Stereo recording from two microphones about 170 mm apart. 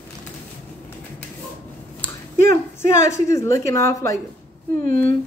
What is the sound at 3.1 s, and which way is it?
A woman's voice, 15° left (ahead or behind).